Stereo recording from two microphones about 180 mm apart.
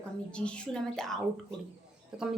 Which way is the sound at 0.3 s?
5° left (ahead or behind).